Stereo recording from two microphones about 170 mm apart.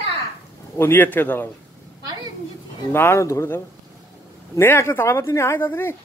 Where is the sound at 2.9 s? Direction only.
15° left (ahead or behind).